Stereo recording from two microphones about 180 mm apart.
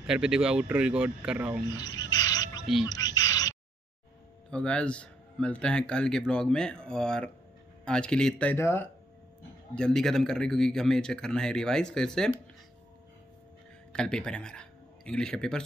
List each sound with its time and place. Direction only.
0.0 s speech: 5° right (ahead or behind)
1.8 s a sound: 20° left (ahead or behind)
4.5 s speech: 5° left (ahead or behind)
13.9 s speech: 5° left (ahead or behind)